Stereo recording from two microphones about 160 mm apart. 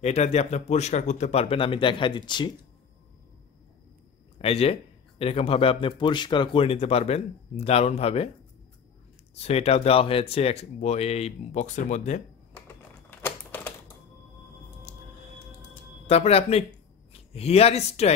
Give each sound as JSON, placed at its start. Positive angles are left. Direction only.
{"t": 0.0, "sound": "speech", "side_deg": 45}
{"t": 4.4, "sound": "speech", "side_deg": 40}
{"t": 9.3, "sound": "speech", "side_deg": 40}
{"t": 13.2, "sound": "typewriter", "side_deg": 15}
{"t": 14.9, "sound": "music", "side_deg": 45}
{"t": 16.1, "sound": "speech", "side_deg": 40}